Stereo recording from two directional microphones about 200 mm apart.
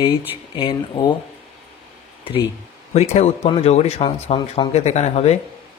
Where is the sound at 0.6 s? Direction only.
25° left (ahead or behind).